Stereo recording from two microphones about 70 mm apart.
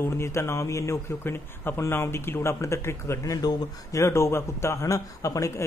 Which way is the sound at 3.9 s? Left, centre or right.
Left.